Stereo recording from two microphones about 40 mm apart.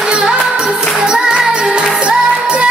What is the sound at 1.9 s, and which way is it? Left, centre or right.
Music, right.